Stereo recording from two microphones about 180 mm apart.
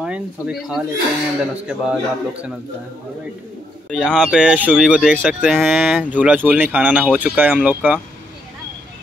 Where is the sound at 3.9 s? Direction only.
5° right (ahead or behind).